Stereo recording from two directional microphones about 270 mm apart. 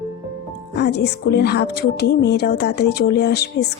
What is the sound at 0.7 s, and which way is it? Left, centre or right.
Speech, left.